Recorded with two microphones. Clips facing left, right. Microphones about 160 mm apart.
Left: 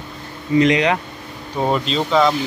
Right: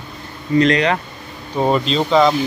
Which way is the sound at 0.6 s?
15° left (ahead or behind).